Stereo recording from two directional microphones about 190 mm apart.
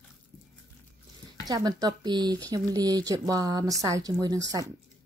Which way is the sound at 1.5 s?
20° right (ahead or behind).